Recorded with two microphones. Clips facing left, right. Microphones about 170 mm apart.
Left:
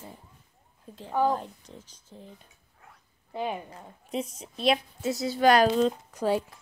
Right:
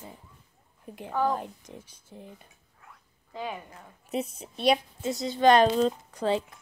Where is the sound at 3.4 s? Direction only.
25° left (ahead or behind).